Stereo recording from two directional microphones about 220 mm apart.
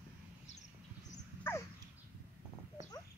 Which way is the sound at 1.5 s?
10° left (ahead or behind).